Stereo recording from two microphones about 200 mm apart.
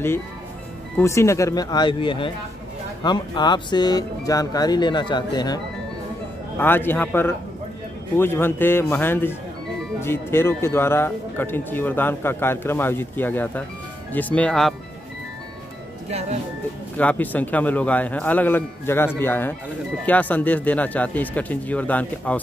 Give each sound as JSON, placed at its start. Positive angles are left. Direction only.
{"t": 0.9, "sound": "speech", "side_deg": 15}
{"t": 6.6, "sound": "speech", "side_deg": 10}
{"t": 16.1, "sound": "speech", "side_deg": -30}
{"t": 16.9, "sound": "speech", "side_deg": 5}